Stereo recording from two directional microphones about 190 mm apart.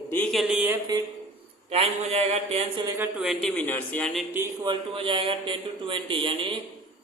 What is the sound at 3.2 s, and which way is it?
Speech, centre (ahead or behind).